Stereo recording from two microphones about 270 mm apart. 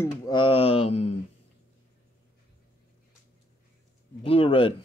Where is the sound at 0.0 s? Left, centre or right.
Centre.